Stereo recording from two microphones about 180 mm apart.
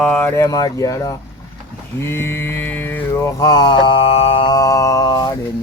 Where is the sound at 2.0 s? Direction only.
15° left (ahead or behind).